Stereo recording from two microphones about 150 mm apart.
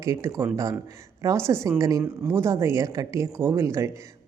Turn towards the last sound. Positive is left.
turn(degrees=-20)  # may be behind; listen again after turning